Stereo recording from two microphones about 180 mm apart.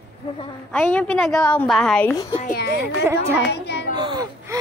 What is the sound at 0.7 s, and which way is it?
A woman's voice, 5° left (ahead or behind).